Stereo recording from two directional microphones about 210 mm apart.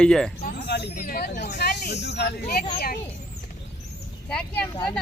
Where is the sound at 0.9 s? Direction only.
40° left (ahead or behind).